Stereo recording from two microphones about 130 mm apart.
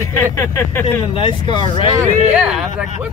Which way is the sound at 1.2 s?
40° left (ahead or behind).